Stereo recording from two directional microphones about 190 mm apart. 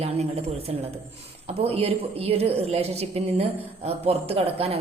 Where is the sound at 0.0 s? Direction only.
35° right (ahead or behind).